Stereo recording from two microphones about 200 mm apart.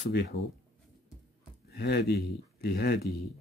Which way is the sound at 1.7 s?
50° left (ahead or behind).